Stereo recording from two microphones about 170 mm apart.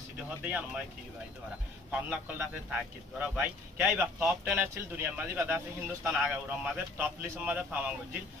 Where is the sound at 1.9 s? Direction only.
5° right (ahead or behind).